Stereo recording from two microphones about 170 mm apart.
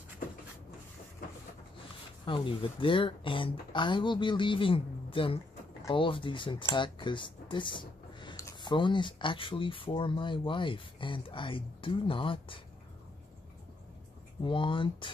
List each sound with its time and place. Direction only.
2.2 s speech: 30° left (ahead or behind)
14.4 s speech: 30° left (ahead or behind)